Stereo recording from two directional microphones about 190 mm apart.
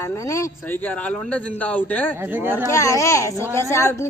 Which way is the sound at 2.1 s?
10° right (ahead or behind).